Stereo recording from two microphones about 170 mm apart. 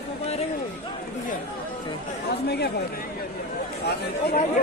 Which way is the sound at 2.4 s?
75° left (ahead or behind).